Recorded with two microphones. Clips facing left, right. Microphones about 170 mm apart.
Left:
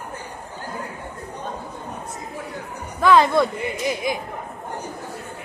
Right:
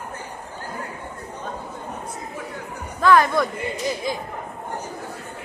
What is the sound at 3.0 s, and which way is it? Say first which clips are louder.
Speech: left 1 dB; 20° left (ahead or behind).